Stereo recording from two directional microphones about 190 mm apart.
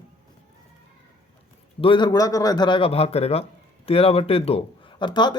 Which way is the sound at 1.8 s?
25° left (ahead or behind).